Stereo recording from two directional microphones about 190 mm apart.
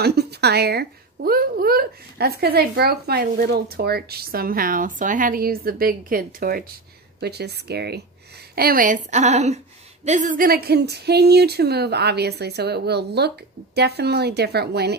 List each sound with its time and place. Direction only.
0.0 s a woman's voice: 60° right (ahead or behind)